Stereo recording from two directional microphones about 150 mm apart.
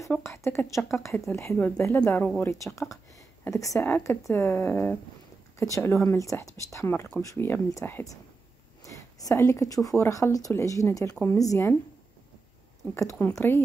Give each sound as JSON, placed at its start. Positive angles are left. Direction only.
{"t": 0.1, "sound": "speech", "side_deg": 20}
{"t": 3.4, "sound": "speech", "side_deg": 20}
{"t": 13.2, "sound": "speech", "side_deg": 15}